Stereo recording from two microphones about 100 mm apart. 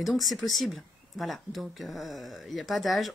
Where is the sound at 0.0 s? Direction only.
Centre (ahead or behind).